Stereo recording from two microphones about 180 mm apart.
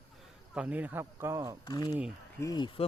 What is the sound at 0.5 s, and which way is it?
Speech, 10° right (ahead or behind).